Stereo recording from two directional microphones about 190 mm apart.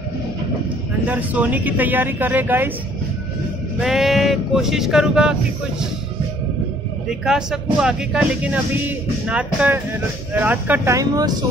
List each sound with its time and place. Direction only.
1.0 s speech: 10° right (ahead or behind)
3.8 s speech: centre (ahead or behind)
7.1 s speech: 5° right (ahead or behind); by 11.3 s 20° right (ahead or behind)